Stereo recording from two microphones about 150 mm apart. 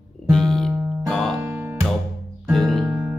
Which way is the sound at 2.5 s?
Centre (ahead or behind).